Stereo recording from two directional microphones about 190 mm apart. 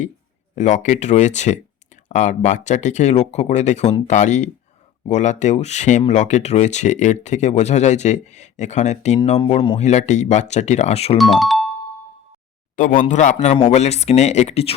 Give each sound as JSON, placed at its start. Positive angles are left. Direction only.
{"t": 0.5, "sound": "speech", "side_deg": 40}
{"t": 11.2, "sound": "speech", "side_deg": 0}
{"t": 12.7, "sound": "speech", "side_deg": 45}